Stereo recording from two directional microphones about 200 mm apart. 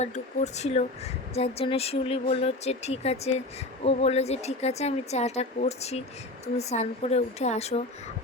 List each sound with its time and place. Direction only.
0.0 s speech: 35° left (ahead or behind)